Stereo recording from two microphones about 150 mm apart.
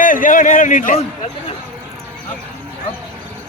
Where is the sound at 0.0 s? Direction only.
65° left (ahead or behind).